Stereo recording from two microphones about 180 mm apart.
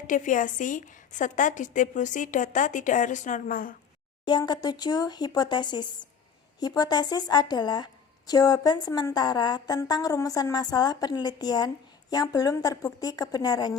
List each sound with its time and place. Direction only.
0.1 s a woman's voice: 45° left (ahead or behind)
4.3 s a woman's voice: 25° left (ahead or behind)